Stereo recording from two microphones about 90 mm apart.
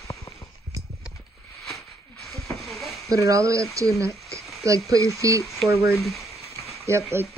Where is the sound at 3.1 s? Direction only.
35° right (ahead or behind).